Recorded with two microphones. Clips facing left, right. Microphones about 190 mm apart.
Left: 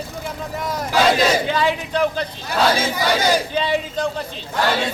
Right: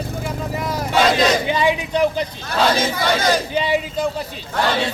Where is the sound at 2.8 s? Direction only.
10° left (ahead or behind).